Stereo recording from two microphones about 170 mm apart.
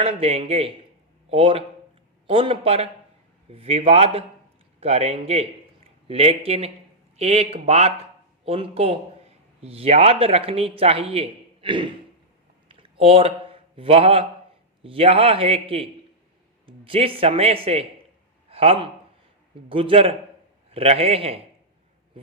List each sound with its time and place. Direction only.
0.0 s speech: 35° right (ahead or behind)
12.6 s a sound: 30° right (ahead or behind)
14.8 s a man's voice: 35° right (ahead or behind)